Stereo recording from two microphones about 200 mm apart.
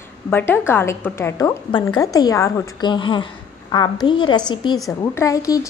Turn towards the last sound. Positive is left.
turn(degrees=15)  # may be behind; listen again after turning